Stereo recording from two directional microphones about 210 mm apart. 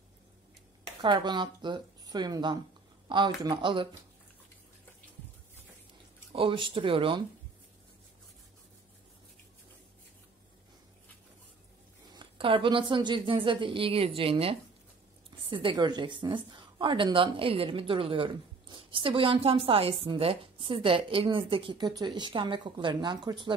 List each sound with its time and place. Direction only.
1.0 s a woman's voice: 20° right (ahead or behind)
6.3 s a woman's voice: 25° right (ahead or behind)
12.1 s a woman's voice: 25° right (ahead or behind)